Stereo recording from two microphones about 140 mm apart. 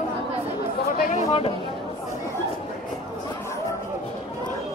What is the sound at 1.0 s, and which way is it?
Chatter, 65° left (ahead or behind).